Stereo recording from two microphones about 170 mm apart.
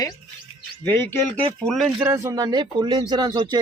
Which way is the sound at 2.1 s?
20° right (ahead or behind).